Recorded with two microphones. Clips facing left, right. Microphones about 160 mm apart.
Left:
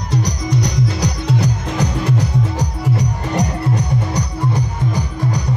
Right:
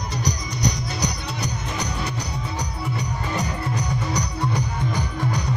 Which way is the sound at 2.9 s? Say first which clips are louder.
Left 7 dB; 70° left (ahead or behind).